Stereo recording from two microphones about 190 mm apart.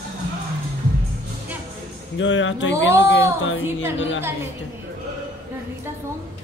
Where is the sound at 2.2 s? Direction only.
85° left.